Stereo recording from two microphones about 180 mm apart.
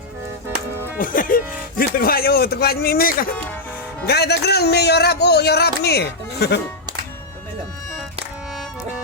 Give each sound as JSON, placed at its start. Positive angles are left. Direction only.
{"t": 0.9, "sound": "speech", "side_deg": 50}